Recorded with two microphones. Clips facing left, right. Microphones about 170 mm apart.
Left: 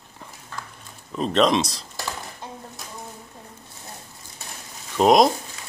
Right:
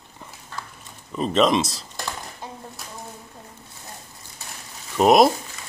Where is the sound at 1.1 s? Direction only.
Centre (ahead or behind).